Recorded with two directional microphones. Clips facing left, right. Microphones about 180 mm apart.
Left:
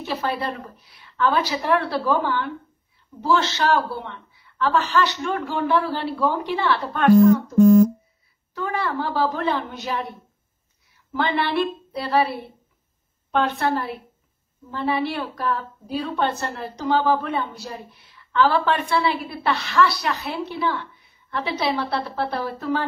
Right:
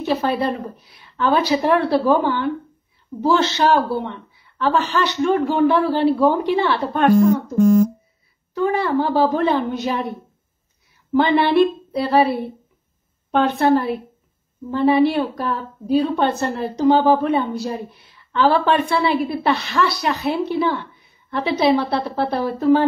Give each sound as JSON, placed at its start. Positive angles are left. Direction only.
{"t": 0.2, "sound": "a woman's voice", "side_deg": -20}
{"t": 8.5, "sound": "a woman's voice", "side_deg": -20}
{"t": 11.1, "sound": "a woman's voice", "side_deg": -20}
{"t": 13.3, "sound": "a woman's voice", "side_deg": -20}